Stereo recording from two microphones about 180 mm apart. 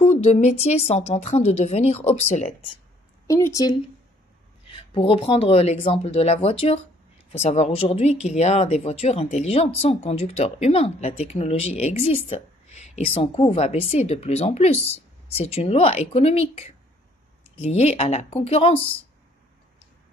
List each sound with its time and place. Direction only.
0.0 s speech: 35° left (ahead or behind)
3.3 s speech: 15° left (ahead or behind)
4.6 s speech: 30° left (ahead or behind)